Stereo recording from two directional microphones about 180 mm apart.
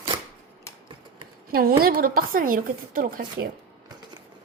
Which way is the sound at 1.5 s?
55° right (ahead or behind).